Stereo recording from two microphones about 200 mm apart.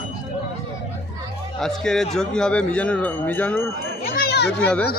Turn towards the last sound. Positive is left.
turn(degrees=5)  # may be behind; listen again after turning